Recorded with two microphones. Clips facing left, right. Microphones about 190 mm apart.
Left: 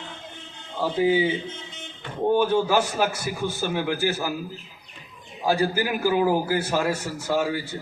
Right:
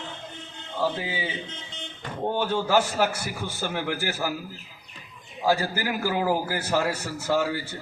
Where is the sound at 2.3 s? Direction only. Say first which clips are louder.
Left 2 dB; 15° left (ahead or behind).